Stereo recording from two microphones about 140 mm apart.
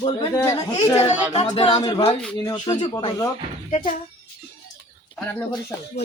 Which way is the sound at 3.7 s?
70° left (ahead or behind).